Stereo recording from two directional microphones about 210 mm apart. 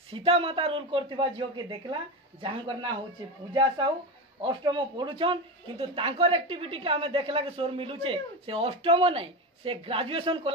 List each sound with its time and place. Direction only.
0.1 s speech: 25° right (ahead or behind)